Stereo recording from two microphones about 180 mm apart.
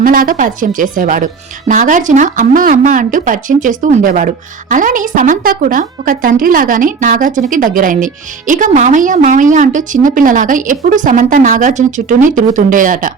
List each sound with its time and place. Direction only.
0.0 s speech: 50° right (ahead or behind)